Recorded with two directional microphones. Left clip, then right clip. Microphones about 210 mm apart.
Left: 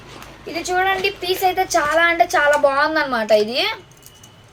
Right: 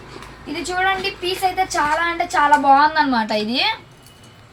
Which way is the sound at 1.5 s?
45° left (ahead or behind).